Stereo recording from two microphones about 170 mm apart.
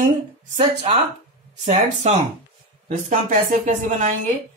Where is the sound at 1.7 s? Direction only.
40° right (ahead or behind).